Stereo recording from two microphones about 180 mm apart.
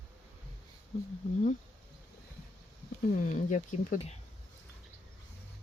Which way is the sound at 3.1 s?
45° left (ahead or behind).